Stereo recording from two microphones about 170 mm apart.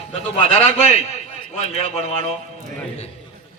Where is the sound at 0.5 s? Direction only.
40° left (ahead or behind).